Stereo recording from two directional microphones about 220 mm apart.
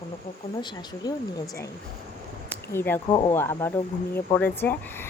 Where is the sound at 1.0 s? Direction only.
20° left (ahead or behind).